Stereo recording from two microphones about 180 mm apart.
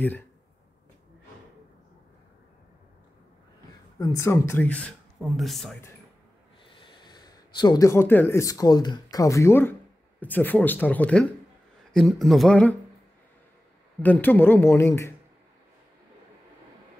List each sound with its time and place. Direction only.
4.0 s speech: 15° left (ahead or behind); by 5.8 s centre (ahead or behind)
6.7 s speech: 25° left (ahead or behind); by 12.7 s 5° left (ahead or behind)
14.0 s speech: 10° left (ahead or behind)